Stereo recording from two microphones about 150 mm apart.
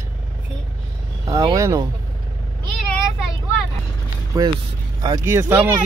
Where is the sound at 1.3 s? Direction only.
25° right (ahead or behind).